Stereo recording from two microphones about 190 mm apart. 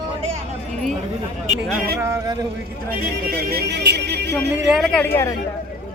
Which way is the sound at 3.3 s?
55° right (ahead or behind).